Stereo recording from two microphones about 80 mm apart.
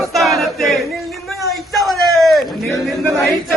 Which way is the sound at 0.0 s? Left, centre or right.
Centre.